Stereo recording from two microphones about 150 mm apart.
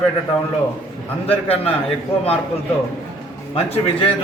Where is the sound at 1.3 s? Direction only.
40° left (ahead or behind).